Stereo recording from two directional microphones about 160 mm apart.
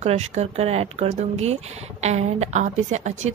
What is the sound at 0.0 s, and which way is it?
Speech, 45° right (ahead or behind).